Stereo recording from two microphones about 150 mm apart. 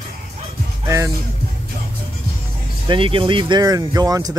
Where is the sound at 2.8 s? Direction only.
35° right (ahead or behind).